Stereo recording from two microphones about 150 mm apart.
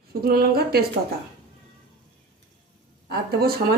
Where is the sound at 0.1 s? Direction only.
90° right.